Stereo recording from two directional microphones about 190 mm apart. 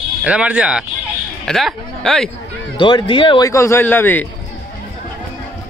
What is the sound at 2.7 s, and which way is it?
Speech, 25° left (ahead or behind).